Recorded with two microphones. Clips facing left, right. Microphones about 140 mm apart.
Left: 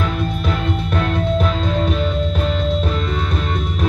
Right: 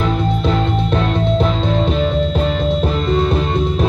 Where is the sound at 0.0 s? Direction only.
25° right (ahead or behind).